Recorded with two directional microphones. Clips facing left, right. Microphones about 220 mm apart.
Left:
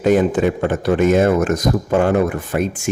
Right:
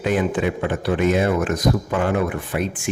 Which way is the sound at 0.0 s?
45° left (ahead or behind).